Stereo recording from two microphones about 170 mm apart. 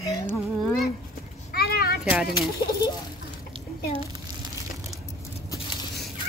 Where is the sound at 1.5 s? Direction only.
65° left (ahead or behind).